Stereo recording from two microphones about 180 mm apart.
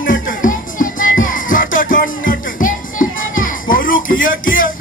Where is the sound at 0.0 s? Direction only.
50° left (ahead or behind).